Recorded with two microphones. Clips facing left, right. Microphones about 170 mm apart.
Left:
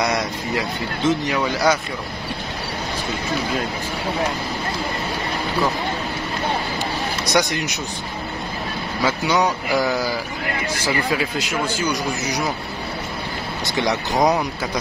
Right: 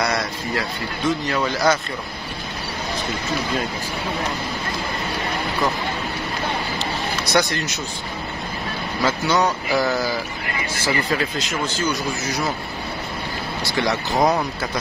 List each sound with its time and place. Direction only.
0.0 s speech: 20° left (ahead or behind)
7.3 s speech: 15° left (ahead or behind)
9.0 s speech: 15° left (ahead or behind)
13.7 s speech: 20° left (ahead or behind)